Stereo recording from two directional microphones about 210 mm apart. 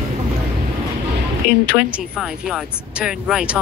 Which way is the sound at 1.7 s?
5° right (ahead or behind).